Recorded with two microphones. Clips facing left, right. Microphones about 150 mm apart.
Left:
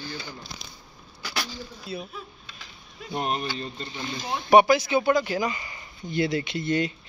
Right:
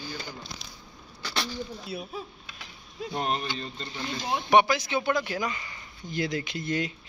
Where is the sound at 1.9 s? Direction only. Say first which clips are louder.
Left 5 dB; 60° right (ahead or behind).